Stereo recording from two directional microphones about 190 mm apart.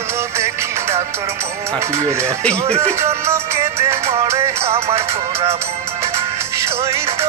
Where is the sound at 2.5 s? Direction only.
30° right (ahead or behind).